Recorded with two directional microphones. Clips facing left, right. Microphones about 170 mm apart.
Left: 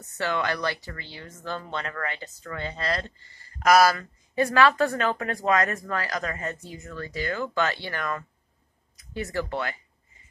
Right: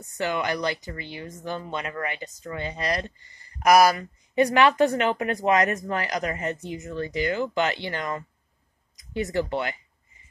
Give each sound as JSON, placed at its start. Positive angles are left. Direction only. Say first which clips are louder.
{"t": 0.0, "sound": "speech", "louder": "right 1 dB", "side_deg": -15}